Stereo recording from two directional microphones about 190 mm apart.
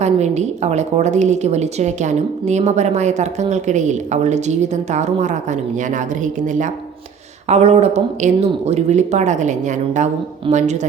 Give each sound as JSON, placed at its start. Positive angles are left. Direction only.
{"t": 0.0, "sound": "a woman's voice", "side_deg": -35}